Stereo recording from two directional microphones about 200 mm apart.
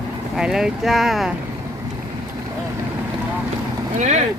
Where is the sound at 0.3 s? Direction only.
5° right (ahead or behind).